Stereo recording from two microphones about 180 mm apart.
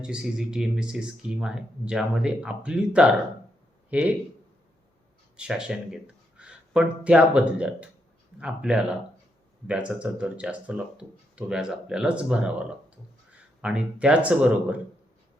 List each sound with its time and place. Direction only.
0.0 s speech: 5° right (ahead or behind)
5.4 s speech: 5° right (ahead or behind)